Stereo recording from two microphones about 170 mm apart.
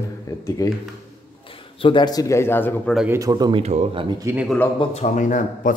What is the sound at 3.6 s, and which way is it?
Speech, 40° right (ahead or behind).